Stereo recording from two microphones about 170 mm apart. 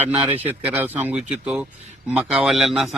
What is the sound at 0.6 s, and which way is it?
A man's voice, 10° right (ahead or behind).